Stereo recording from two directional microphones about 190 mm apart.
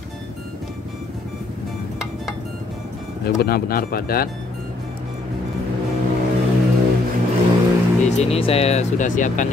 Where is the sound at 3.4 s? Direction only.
55° left (ahead or behind).